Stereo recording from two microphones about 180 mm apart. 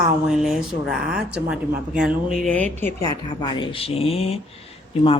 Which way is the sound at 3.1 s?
25° left (ahead or behind).